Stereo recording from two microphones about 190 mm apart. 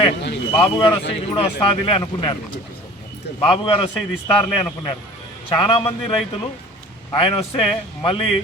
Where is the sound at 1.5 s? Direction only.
25° left (ahead or behind).